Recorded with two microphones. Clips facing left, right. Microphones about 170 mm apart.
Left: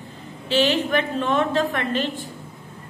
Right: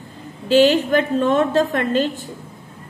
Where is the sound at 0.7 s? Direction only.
45° right (ahead or behind).